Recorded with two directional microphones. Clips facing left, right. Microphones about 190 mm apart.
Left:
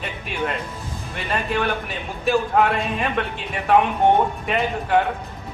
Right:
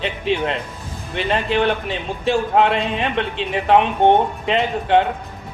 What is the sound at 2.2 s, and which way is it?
A man's voice, 25° right (ahead or behind).